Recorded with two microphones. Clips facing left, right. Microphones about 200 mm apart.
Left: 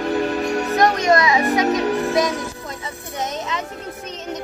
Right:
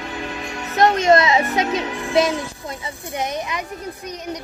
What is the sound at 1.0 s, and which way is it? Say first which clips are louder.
Music: right 2 dB; 25° right (ahead or behind).